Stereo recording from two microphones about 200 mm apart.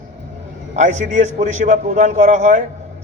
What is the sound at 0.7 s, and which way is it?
A man's voice, 35° right (ahead or behind).